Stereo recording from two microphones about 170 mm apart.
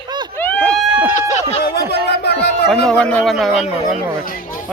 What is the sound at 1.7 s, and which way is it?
Chatter, 75° left (ahead or behind).